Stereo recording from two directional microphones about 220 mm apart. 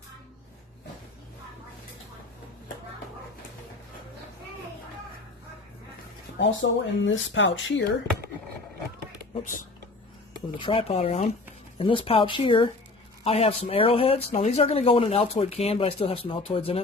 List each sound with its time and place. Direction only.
6.4 s speech: 60° left (ahead or behind)
10.6 s speech: 25° left (ahead or behind)